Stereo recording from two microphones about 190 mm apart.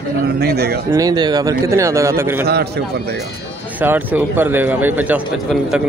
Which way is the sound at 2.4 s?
60° right (ahead or behind).